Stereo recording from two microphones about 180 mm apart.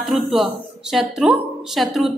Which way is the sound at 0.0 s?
Centre (ahead or behind).